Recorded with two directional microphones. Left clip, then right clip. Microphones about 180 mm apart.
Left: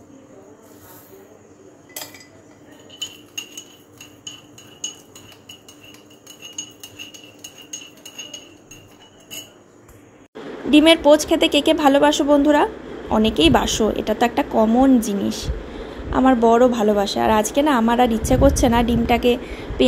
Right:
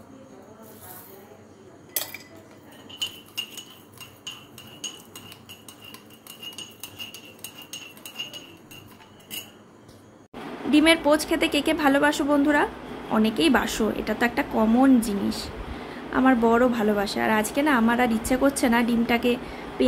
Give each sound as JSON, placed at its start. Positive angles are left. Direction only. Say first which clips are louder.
{"t": 10.7, "sound": "a woman's voice", "louder": "left 7 dB", "side_deg": 20}